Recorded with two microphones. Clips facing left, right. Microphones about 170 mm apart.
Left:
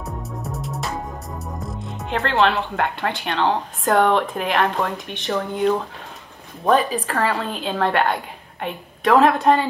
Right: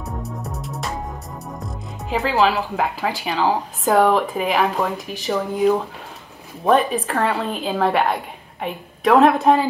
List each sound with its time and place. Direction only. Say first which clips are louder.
0.0 s music: right 1 dB; centre (ahead or behind)
1.6 s speech: left 2 dB; centre (ahead or behind)